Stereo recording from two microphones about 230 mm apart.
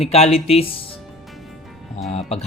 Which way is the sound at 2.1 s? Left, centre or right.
Left.